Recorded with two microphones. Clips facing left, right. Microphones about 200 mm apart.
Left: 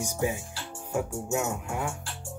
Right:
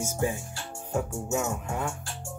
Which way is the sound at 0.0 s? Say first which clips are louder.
Even; 15° left (ahead or behind).